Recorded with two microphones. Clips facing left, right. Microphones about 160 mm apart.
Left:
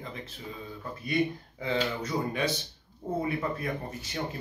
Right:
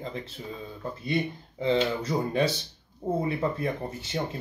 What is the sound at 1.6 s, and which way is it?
Speech, 30° right (ahead or behind).